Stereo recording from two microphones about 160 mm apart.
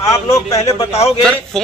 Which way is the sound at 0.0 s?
20° left (ahead or behind).